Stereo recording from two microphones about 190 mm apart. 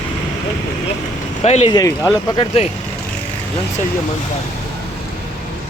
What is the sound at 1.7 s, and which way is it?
Speech, 20° left (ahead or behind).